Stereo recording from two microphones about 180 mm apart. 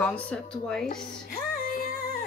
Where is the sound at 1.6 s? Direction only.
50° left (ahead or behind).